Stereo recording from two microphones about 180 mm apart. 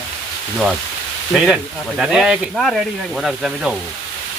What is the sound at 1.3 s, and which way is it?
Speech, centre (ahead or behind).